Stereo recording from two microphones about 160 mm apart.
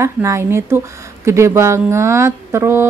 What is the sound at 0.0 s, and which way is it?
A woman's voice, 20° right (ahead or behind).